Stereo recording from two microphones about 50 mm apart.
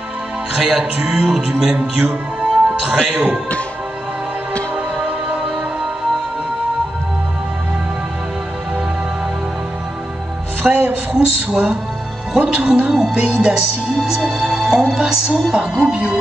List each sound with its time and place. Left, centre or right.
0.6 s music: centre
0.9 s speech: right
1.2 s music: centre
1.8 s speech: right
4.7 s music: right
10.6 s speech: centre
11.1 s music: centre
15.8 s speech: centre